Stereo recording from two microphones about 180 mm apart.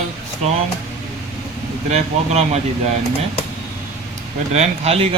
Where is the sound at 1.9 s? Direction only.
35° right (ahead or behind).